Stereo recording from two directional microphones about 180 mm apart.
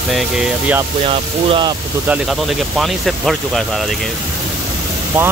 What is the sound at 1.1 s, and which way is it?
Speech, 30° right (ahead or behind).